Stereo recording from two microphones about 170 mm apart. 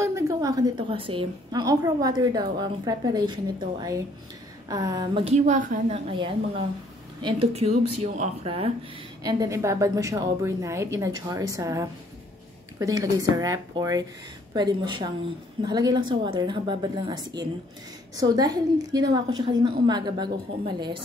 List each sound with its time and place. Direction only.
0.0 s a woman's voice: 20° right (ahead or behind)
4.6 s a woman's voice: 20° right (ahead or behind)
5.2 s speech: 40° right (ahead or behind)
9.2 s a woman's voice: 20° right (ahead or behind)